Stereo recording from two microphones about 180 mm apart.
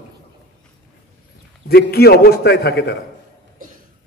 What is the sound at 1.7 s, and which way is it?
A man's voice, 60° left (ahead or behind).